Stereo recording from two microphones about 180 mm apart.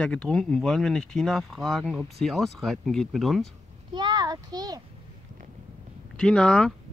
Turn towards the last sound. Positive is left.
turn(degrees=5)  # may be behind; listen again after turning